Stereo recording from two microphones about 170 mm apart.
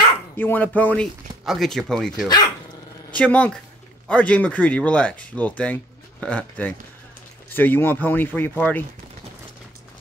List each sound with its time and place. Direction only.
0.4 s speech: 10° left (ahead or behind)
2.2 s speech: 20° left (ahead or behind)
3.1 s speech: 10° left (ahead or behind)